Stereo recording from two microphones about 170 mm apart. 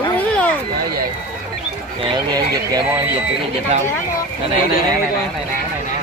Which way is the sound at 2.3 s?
25° right (ahead or behind).